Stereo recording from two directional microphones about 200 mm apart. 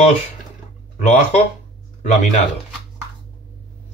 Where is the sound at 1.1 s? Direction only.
40° left (ahead or behind).